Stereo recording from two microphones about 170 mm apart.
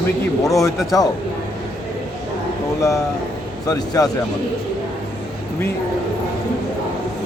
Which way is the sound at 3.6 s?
20° left (ahead or behind).